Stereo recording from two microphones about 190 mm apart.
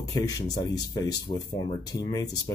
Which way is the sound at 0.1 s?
20° left (ahead or behind).